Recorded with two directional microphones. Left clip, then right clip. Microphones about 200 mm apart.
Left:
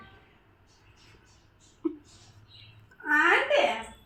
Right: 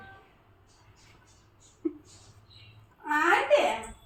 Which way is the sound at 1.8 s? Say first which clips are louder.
Left 1 dB; 45° left (ahead or behind).